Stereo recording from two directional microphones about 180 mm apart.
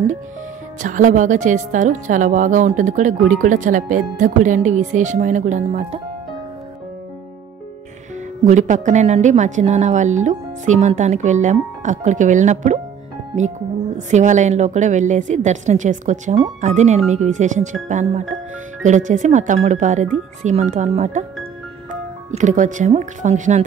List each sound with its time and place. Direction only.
0.8 s speech: 45° right (ahead or behind)
8.5 s a woman's voice: 45° right (ahead or behind)
13.9 s a woman's voice: 45° right (ahead or behind)
22.3 s speech: 45° right (ahead or behind)